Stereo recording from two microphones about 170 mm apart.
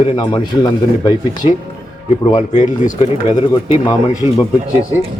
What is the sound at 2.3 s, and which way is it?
Speech, 50° left (ahead or behind).